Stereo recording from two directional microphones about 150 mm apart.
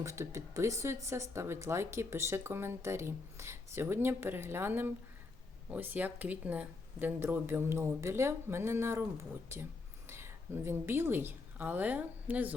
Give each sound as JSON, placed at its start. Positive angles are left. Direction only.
{"t": 0.0, "sound": "a woman's voice", "side_deg": -20}